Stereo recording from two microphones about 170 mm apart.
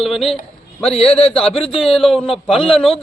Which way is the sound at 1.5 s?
35° left (ahead or behind).